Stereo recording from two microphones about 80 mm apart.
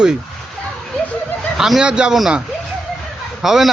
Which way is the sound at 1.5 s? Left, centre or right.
Centre.